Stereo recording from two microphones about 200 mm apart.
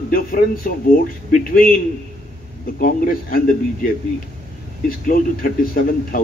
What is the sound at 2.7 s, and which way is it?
A man's voice, 45° left (ahead or behind).